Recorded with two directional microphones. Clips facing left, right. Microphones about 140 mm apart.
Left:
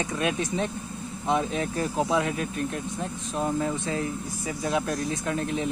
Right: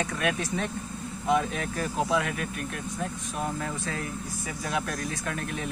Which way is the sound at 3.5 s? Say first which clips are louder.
Left 5 dB; 25° left (ahead or behind).